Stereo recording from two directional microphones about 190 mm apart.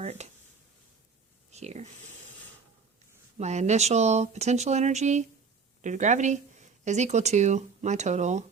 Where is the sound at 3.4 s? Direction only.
35° right (ahead or behind).